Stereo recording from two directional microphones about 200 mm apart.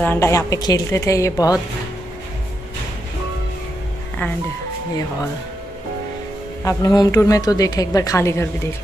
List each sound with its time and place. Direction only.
0.0 s a woman's voice: 10° left (ahead or behind)
6.6 s a woman's voice: 15° left (ahead or behind)